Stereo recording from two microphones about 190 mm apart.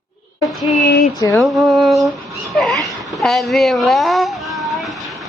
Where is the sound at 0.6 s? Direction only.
Centre (ahead or behind).